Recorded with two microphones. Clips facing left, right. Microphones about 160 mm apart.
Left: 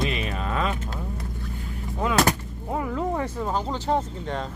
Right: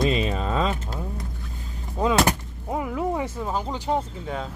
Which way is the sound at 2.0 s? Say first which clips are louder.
Right 2 dB; 25° right (ahead or behind).